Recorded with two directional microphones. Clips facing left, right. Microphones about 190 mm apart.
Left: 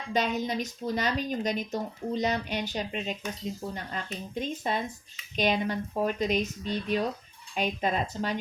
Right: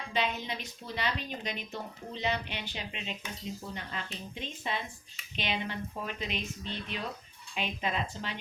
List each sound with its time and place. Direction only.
0.1 s speech: 45° left (ahead or behind)